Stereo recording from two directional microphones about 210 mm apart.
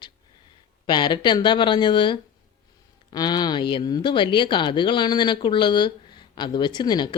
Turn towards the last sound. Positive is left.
turn(degrees=20)  # may be behind; listen again after turning